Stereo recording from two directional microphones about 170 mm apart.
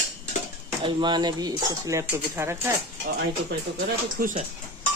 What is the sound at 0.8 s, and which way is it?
Speech, 30° right (ahead or behind).